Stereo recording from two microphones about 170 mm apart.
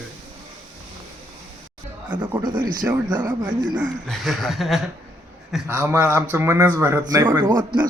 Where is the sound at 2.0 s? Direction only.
20° right (ahead or behind).